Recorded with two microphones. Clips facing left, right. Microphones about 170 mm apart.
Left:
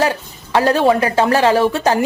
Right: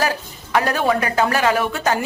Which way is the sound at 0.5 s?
30° left (ahead or behind).